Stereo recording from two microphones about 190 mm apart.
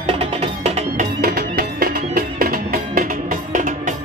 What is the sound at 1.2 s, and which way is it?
Music, 60° right (ahead or behind).